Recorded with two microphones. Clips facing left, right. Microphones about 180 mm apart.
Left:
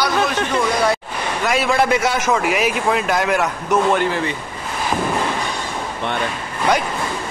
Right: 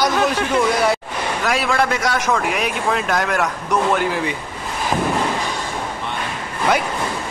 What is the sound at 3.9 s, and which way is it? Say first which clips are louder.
Speech: left 1 dB; 10° right (ahead or behind).